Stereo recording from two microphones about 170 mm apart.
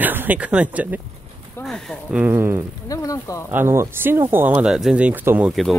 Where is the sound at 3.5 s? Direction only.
15° right (ahead or behind).